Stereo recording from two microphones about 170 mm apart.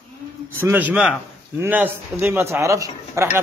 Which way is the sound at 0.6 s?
10° right (ahead or behind).